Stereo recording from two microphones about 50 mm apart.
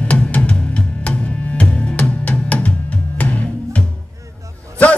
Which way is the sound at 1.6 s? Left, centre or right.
Left.